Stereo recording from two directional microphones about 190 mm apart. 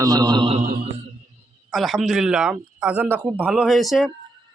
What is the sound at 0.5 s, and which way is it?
Mantra, 45° right (ahead or behind).